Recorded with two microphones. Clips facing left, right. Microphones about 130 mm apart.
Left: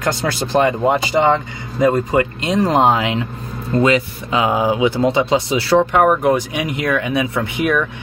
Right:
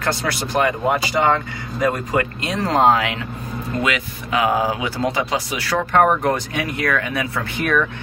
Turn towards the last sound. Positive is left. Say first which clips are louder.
# left 5 dB
turn(degrees=15)  # may be behind; listen again after turning